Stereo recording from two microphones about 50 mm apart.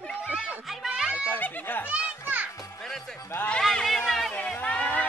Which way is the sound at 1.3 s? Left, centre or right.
Left.